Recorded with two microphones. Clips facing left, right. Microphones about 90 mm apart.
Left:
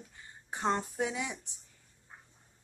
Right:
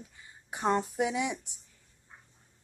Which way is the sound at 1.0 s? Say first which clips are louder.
Right 4 dB; 20° right (ahead or behind).